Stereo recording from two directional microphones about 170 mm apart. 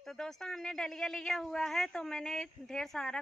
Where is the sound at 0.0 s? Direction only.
Centre (ahead or behind).